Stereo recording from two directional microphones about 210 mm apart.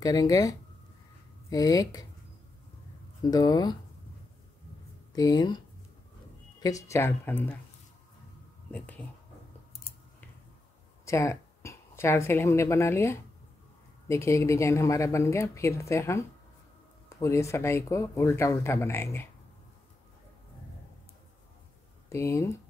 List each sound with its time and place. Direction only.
0.0 s speech: 20° left (ahead or behind)
3.3 s speech: 20° left (ahead or behind)
5.1 s speech: 20° left (ahead or behind)
6.6 s speech: 15° left (ahead or behind)
8.7 s speech: 5° left (ahead or behind)
11.1 s speech: 15° left (ahead or behind)
22.1 s speech: 15° left (ahead or behind)